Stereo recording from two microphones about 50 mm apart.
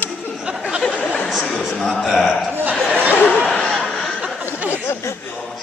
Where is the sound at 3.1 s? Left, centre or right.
Left.